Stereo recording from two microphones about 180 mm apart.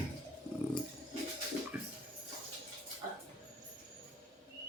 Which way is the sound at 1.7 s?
10° right (ahead or behind).